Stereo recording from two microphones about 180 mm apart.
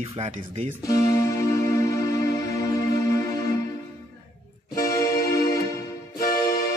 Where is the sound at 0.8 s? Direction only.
15° left (ahead or behind).